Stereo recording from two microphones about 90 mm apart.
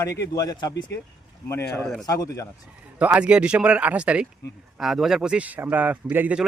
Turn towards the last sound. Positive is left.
turn(degrees=-20)  # may be behind; listen again after turning